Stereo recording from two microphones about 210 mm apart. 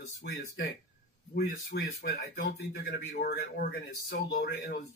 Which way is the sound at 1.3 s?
50° left (ahead or behind).